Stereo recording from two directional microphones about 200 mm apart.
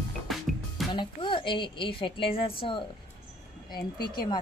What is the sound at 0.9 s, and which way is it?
A woman's voice, 25° left (ahead or behind).